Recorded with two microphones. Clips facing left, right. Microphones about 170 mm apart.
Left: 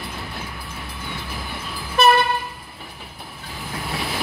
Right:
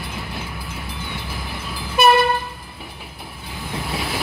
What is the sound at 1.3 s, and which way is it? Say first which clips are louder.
Train: right 1 dB; centre (ahead or behind).